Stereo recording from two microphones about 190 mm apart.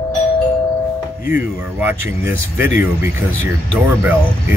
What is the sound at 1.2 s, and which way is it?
Speech, 10° right (ahead or behind).